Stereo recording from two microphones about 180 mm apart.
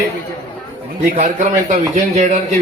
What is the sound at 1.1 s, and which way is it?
Speech, 40° right (ahead or behind).